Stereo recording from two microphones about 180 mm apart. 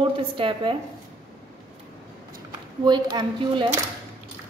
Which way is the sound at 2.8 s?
25° right (ahead or behind).